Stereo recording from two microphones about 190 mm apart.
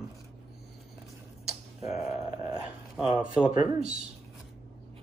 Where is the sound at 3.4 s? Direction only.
Centre (ahead or behind).